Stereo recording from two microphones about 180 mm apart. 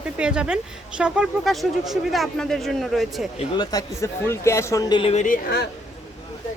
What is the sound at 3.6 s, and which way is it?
Speech, 20° left (ahead or behind).